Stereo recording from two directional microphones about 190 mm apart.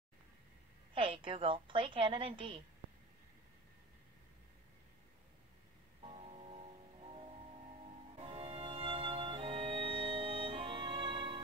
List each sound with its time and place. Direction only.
0.9 s a woman's voice: 25° right (ahead or behind)
6.0 s music: 30° right (ahead or behind)